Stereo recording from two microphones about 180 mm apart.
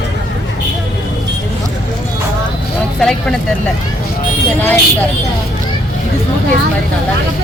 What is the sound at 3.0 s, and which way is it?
Speech, 5° left (ahead or behind).